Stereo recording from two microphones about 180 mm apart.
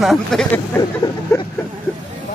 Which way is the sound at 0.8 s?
20° left (ahead or behind).